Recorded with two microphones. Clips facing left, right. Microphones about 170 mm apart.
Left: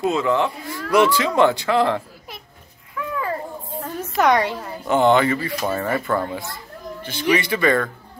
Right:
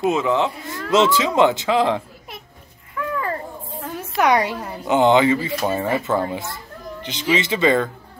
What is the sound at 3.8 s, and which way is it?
A woman's voice, 5° right (ahead or behind).